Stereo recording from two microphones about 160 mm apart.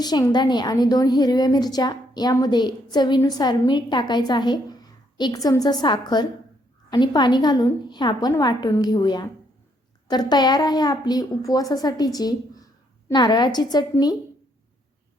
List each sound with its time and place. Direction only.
0.0 s a woman's voice: 25° left (ahead or behind)